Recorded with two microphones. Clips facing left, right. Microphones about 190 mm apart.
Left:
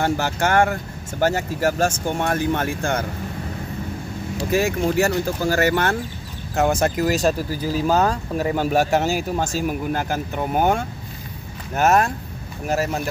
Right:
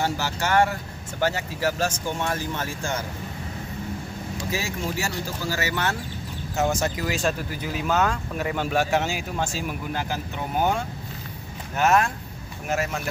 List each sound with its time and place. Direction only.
0.0 s speech: 50° left (ahead or behind)
4.5 s speech: 55° left (ahead or behind); by 13.0 s 35° left (ahead or behind)